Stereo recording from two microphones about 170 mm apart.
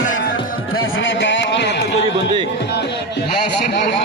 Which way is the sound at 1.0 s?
90° left.